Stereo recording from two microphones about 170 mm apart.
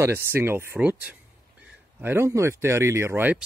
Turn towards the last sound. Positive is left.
turn(degrees=-10)  # may be behind; listen again after turning